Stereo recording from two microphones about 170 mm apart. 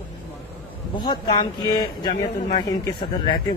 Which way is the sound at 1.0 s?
25° left (ahead or behind).